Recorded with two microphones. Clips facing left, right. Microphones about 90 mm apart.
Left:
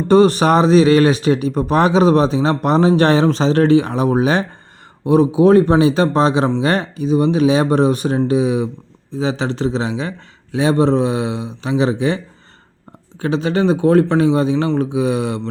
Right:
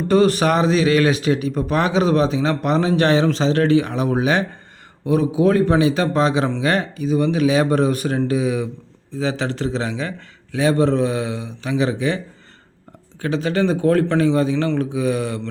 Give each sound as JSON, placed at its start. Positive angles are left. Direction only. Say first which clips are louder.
{"t": 0.1, "sound": "a man's voice", "louder": "left 4 dB", "side_deg": 30}
{"t": 13.2, "sound": "a man's voice", "louder": "left 3 dB", "side_deg": 25}